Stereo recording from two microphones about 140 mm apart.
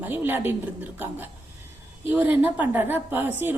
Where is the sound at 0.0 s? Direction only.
15° right (ahead or behind).